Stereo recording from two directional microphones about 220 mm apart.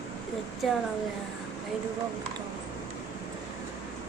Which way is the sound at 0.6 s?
Centre (ahead or behind).